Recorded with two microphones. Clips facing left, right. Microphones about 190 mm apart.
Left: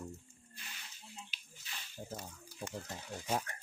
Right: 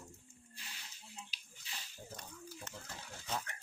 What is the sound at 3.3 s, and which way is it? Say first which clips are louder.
Speech: left 5 dB; 35° left (ahead or behind).